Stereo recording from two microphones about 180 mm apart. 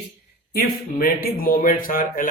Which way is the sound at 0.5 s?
55° left (ahead or behind).